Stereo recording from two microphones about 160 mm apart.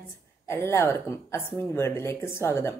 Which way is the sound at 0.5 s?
15° left (ahead or behind).